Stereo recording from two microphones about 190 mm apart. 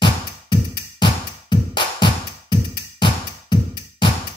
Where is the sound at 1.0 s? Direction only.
25° left (ahead or behind).